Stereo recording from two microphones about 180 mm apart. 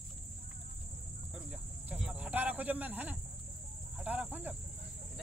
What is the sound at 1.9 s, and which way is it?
Cricket, 5° right (ahead or behind).